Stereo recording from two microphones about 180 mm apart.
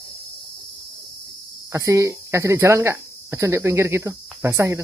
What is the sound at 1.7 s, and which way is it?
Speech, 15° right (ahead or behind).